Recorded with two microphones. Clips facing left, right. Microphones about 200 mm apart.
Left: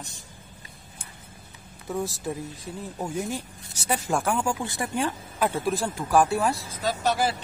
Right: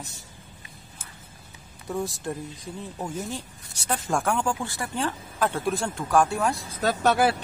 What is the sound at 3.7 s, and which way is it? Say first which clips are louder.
Speech: left 1 dB; 5° left (ahead or behind).